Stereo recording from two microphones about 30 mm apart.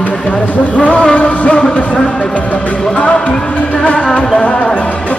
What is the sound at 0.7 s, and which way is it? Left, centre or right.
Music, left.